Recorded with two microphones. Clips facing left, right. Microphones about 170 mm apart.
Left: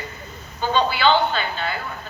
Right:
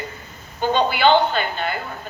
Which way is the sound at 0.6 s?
50° right (ahead or behind).